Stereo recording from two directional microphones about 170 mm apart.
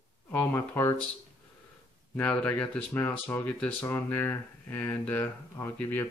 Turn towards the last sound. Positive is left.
turn(degrees=15)  # may be behind; listen again after turning